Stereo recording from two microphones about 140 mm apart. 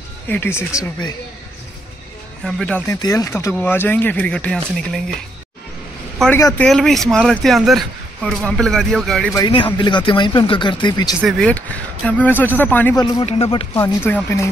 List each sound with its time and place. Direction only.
0.3 s speech: 15° left (ahead or behind)
2.4 s speech: 10° left (ahead or behind)
3.0 s speech: 25° left (ahead or behind); by 5.1 s 5° left (ahead or behind)
6.6 s speech: centre (ahead or behind)
9.8 s speech: 35° left (ahead or behind)
11.1 s speech: centre (ahead or behind)
13.2 s speech: 45° left (ahead or behind)
13.7 s speech: 15° left (ahead or behind)